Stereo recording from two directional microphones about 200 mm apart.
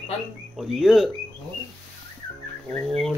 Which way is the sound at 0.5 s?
Centre (ahead or behind).